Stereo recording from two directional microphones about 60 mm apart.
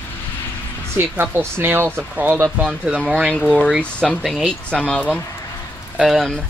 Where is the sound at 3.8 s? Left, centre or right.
Left.